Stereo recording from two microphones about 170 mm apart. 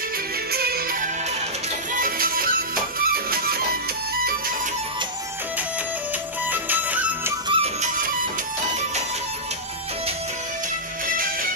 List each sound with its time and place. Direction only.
0.5 s music: 65° right (ahead or behind)
2.0 s music: 55° right (ahead or behind)
6.5 s music: 10° right (ahead or behind)
7.4 s music: 30° right (ahead or behind)